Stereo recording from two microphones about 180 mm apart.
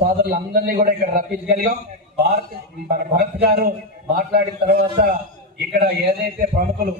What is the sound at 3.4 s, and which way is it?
A man's voice, 55° right (ahead or behind).